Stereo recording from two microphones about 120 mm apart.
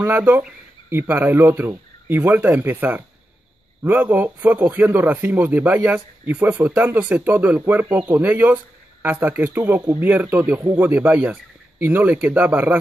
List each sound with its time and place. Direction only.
0.0 s speech: 15° right (ahead or behind)